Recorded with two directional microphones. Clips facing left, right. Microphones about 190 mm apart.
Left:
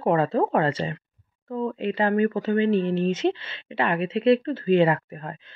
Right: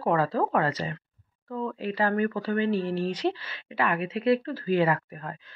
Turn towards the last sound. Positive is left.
turn(degrees=25)  # may be behind; listen again after turning